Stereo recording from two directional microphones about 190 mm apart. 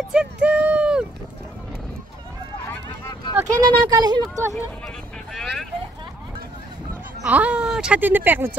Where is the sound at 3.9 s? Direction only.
20° right (ahead or behind).